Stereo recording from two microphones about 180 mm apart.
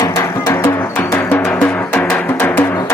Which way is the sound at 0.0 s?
20° left (ahead or behind).